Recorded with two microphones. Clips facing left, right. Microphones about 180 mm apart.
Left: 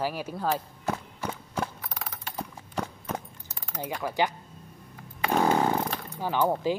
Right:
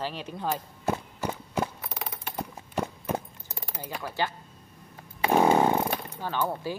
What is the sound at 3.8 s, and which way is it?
Speech, 10° left (ahead or behind).